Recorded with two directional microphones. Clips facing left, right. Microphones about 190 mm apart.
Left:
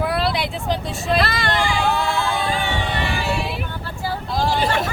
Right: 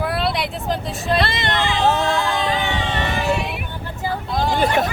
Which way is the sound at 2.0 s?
20° right (ahead or behind).